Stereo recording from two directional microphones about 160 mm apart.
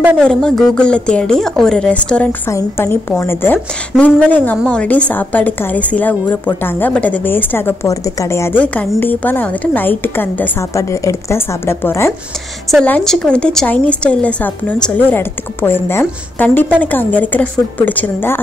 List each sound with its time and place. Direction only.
0.2 s a woman's voice: 5° left (ahead or behind)